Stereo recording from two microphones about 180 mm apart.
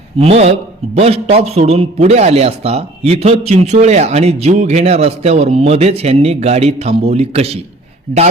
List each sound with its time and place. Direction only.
0.2 s a man's voice: 35° right (ahead or behind)